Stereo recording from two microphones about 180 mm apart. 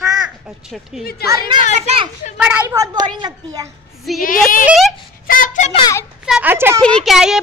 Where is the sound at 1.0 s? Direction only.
60° left (ahead or behind).